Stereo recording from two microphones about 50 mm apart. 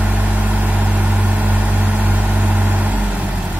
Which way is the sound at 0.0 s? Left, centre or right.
Right.